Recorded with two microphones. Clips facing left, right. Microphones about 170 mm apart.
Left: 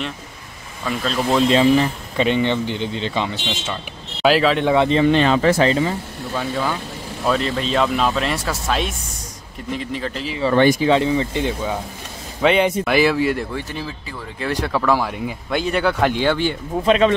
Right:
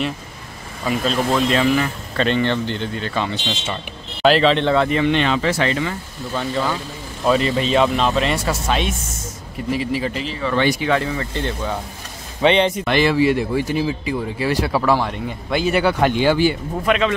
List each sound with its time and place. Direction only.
1.3 s speech: 25° left (ahead or behind)
2.1 s speech: 15° left (ahead or behind)
4.2 s speech: 5° left (ahead or behind)
4.7 s speech: 25° left (ahead or behind)
5.0 s speech: 40° left (ahead or behind)
5.6 s speech: 30° left (ahead or behind)
6.3 s speech: 5° left (ahead or behind)
10.5 s speech: 50° left (ahead or behind)
10.8 s speech: 25° left (ahead or behind)
12.4 s speech: 5° left (ahead or behind)
16.8 s speech: 30° left (ahead or behind)